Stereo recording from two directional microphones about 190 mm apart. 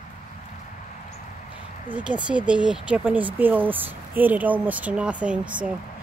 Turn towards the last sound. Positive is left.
turn(degrees=-5)  # may be behind; listen again after turning